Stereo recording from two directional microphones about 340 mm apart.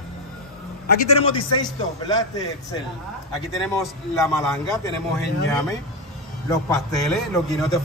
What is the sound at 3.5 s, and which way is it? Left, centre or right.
Mantra, centre.